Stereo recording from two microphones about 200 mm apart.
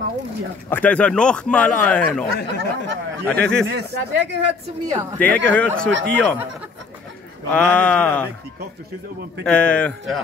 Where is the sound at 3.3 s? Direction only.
5° left (ahead or behind).